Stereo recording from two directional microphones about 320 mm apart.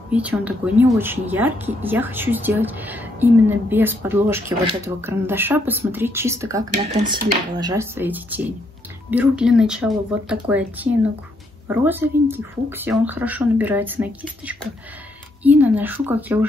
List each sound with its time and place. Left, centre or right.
0.1 s speech: centre
6.9 s speech: right
7.6 s speech: centre